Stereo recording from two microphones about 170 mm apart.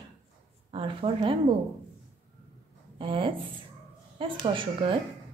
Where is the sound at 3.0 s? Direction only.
30° right (ahead or behind).